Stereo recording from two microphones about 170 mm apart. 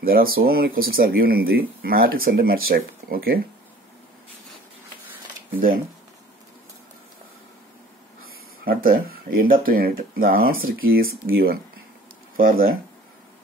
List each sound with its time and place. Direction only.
0.0 s speech: 60° right (ahead or behind)
8.2 s speech: 60° right (ahead or behind)